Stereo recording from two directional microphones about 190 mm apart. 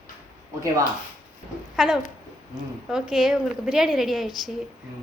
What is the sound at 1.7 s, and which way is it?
A woman's voice, centre (ahead or behind).